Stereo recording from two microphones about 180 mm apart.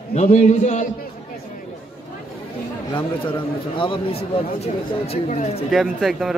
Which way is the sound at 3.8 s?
30° left (ahead or behind).